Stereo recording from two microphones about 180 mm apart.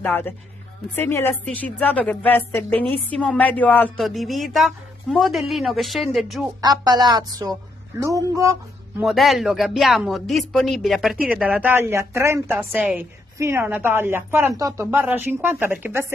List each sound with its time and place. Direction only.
0.0 s speech: 10° left (ahead or behind)
6.6 s a woman's voice: 20° right (ahead or behind)
9.0 s speech: centre (ahead or behind)